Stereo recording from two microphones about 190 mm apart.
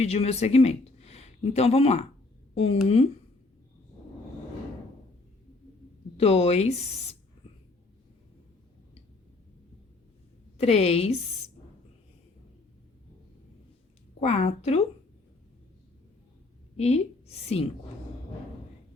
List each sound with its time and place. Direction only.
0.0 s speech: 35° left (ahead or behind)
6.1 s speech: 35° left (ahead or behind)
10.6 s speech: 35° left (ahead or behind)
14.2 s speech: 35° left (ahead or behind)
16.7 s a woman's voice: 35° left (ahead or behind)